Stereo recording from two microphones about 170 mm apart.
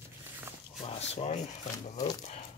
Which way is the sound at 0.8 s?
40° left (ahead or behind).